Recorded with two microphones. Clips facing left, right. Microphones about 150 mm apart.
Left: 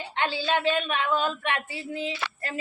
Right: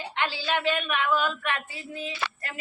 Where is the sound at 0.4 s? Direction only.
25° left (ahead or behind).